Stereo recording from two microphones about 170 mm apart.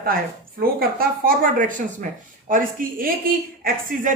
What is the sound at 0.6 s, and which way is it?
A woman's voice, 60° right (ahead or behind).